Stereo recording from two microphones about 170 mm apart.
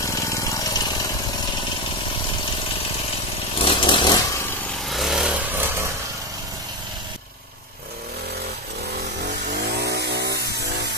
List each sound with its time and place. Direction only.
0.0 s engine: 20° left (ahead or behind)
3.5 s chainsaw: 30° left (ahead or behind)
4.8 s vehicle: centre (ahead or behind)
9.5 s vehicle: 75° right (ahead or behind)